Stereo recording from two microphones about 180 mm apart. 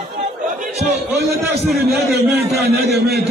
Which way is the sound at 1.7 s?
60° right (ahead or behind).